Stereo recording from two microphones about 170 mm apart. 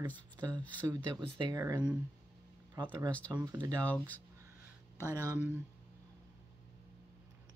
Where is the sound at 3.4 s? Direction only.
20° right (ahead or behind).